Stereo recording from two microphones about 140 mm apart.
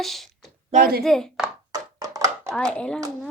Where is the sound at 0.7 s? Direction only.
90° right.